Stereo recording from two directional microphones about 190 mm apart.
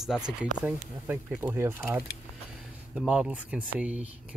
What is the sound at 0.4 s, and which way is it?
Speech, 10° right (ahead or behind).